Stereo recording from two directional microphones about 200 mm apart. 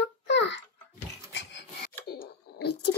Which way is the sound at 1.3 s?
65° left (ahead or behind).